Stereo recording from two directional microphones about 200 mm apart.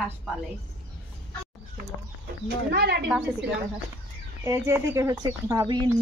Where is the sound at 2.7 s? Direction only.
50° right (ahead or behind).